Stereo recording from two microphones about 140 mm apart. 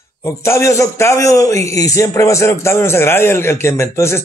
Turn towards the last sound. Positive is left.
turn(degrees=20)  # may be behind; listen again after turning